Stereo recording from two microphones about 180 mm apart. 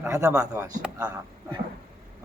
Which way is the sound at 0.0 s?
15° right (ahead or behind).